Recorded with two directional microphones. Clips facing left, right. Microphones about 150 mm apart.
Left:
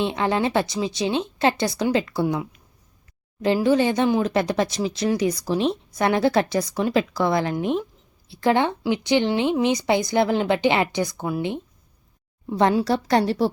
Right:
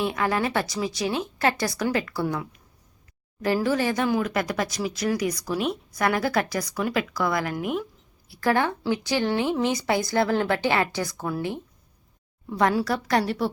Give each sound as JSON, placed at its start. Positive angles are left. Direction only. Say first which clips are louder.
{"t": 0.0, "sound": "speech", "louder": "left 3 dB", "side_deg": 25}